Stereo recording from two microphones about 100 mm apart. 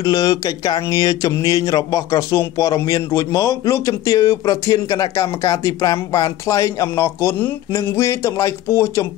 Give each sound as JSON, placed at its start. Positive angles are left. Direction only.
{"t": 0.0, "sound": "speech", "side_deg": 40}